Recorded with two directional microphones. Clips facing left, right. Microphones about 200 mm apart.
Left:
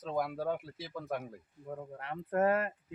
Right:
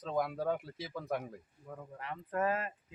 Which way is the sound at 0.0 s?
5° left (ahead or behind).